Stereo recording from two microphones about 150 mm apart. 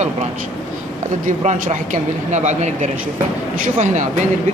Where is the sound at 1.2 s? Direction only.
55° right (ahead or behind).